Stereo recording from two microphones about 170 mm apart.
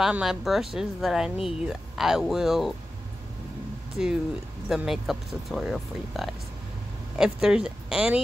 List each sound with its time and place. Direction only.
0.0 s speech: 5° right (ahead or behind)
3.9 s speech: 5° right (ahead or behind)